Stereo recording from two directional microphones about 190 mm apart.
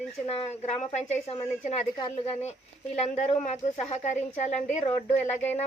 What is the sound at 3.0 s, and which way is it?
A woman's voice, 35° left (ahead or behind).